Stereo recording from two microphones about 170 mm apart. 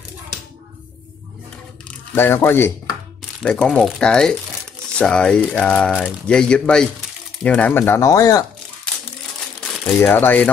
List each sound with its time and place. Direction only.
1.9 s speech: 15° left (ahead or behind)
9.6 s speech: 10° left (ahead or behind)